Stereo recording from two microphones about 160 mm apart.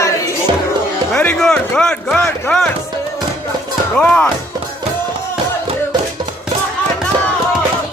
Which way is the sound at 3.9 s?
5° left (ahead or behind).